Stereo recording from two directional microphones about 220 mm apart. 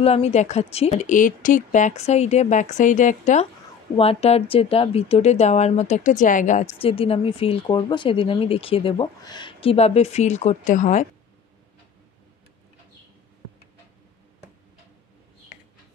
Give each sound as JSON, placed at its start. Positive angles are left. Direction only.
{"t": 0.0, "sound": "a woman's voice", "side_deg": 30}